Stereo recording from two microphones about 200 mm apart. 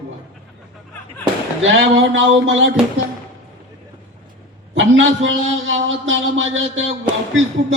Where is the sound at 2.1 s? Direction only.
70° right (ahead or behind).